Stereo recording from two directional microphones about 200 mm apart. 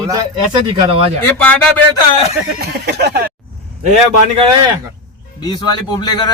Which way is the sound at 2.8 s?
55° right (ahead or behind).